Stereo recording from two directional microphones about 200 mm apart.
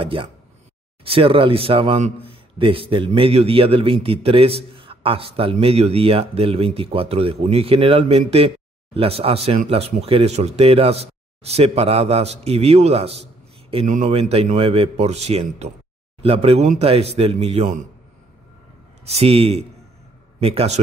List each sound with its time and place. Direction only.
0.0 s a man's voice: 25° right (ahead or behind)
19.0 s speech: 30° right (ahead or behind)